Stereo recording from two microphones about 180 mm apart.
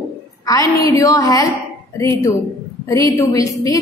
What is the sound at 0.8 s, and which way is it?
A woman's voice, 20° left (ahead or behind).